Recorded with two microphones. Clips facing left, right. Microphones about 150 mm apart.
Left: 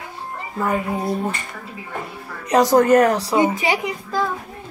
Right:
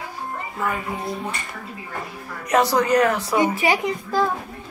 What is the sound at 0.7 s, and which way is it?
Speech, 45° left (ahead or behind).